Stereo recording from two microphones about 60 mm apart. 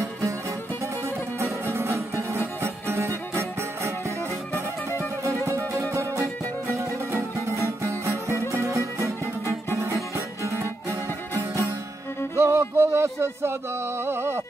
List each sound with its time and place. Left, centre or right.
0.0 s music: right
1.6 s music: right
2.6 s music: right
4.8 s music: left
5.4 s music: right